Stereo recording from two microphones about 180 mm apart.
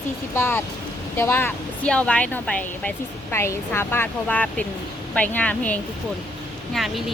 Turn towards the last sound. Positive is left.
turn(degrees=0)  # may be behind; listen again after turning